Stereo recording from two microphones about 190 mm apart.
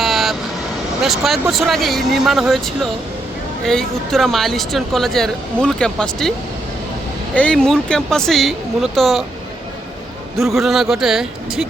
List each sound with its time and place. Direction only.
0.0 s vehicle: centre (ahead or behind)
1.0 s speech: centre (ahead or behind)
7.3 s speech: 5° left (ahead or behind)
10.3 s speech: centre (ahead or behind)